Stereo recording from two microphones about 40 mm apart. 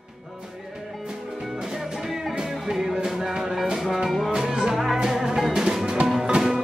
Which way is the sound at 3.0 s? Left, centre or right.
Centre.